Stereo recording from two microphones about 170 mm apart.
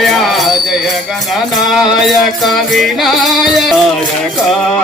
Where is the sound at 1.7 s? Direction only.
Centre (ahead or behind).